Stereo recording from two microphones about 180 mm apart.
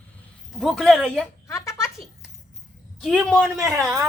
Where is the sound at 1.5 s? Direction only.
15° left (ahead or behind).